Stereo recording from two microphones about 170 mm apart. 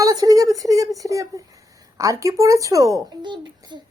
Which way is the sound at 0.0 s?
20° right (ahead or behind).